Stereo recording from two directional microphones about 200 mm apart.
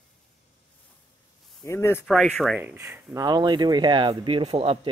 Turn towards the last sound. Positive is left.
turn(degrees=-30)  # may be behind; listen again after turning